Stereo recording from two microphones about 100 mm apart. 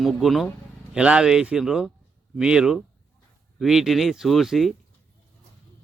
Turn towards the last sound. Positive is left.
turn(degrees=0)  # may be behind; listen again after turning